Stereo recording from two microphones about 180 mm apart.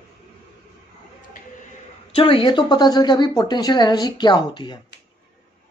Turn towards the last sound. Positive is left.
turn(degrees=25)  # may be behind; listen again after turning